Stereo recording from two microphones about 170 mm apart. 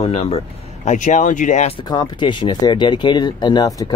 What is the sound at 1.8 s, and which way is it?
Speech, 25° left (ahead or behind).